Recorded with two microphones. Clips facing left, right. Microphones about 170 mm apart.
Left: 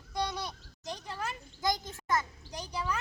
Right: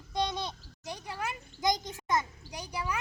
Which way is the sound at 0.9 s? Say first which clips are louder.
Right 1 dB; 10° right (ahead or behind).